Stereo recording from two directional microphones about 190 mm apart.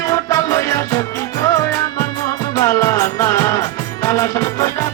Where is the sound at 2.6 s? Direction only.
15° left (ahead or behind).